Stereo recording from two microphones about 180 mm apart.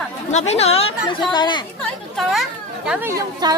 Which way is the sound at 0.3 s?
40° left (ahead or behind).